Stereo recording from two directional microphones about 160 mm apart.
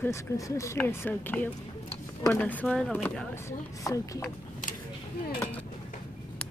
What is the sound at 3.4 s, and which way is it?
Speech, 20° left (ahead or behind).